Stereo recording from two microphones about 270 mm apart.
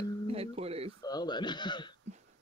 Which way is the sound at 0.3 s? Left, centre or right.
Right.